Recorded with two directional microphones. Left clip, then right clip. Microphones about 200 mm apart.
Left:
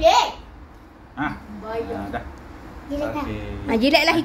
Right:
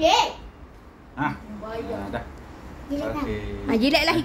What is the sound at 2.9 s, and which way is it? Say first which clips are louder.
Speech: left 3 dB; 10° right (ahead or behind).